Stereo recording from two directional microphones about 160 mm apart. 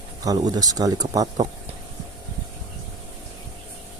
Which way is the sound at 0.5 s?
25° right (ahead or behind).